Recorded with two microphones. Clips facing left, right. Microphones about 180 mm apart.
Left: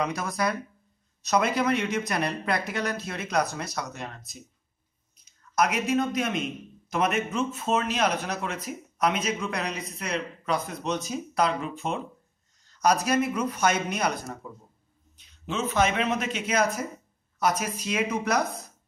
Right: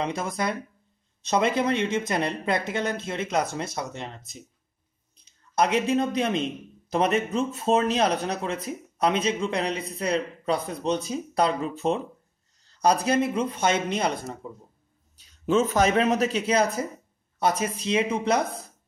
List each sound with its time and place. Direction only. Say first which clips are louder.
0.0 s a man's voice: even; 25° right (ahead or behind)
15.1 s a sound: right 9 dB; 45° right (ahead or behind)
15.7 s a man's voice: right 3 dB; 40° right (ahead or behind)